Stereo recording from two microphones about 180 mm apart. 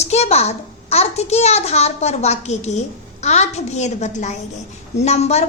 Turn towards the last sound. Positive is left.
turn(degrees=35)  # may be behind; listen again after turning